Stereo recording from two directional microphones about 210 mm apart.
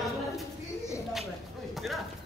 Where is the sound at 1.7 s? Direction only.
Centre (ahead or behind).